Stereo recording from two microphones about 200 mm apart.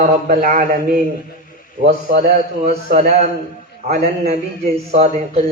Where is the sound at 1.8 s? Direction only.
30° right (ahead or behind).